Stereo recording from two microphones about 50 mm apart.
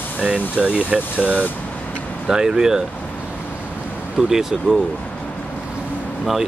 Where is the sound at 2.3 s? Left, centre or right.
Centre.